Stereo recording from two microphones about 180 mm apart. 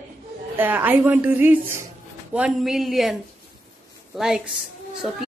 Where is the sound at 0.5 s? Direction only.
10° right (ahead or behind).